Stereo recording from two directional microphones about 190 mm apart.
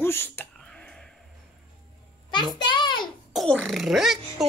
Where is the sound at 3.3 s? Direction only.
5° left (ahead or behind).